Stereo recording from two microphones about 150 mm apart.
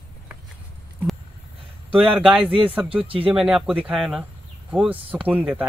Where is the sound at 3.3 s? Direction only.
5° right (ahead or behind).